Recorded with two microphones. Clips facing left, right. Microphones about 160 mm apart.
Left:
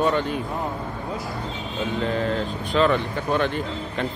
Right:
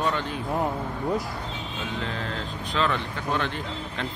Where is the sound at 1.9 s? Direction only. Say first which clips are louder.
Left 10 dB; 10° left (ahead or behind).